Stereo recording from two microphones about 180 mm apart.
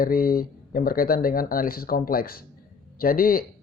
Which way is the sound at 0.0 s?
55° left (ahead or behind).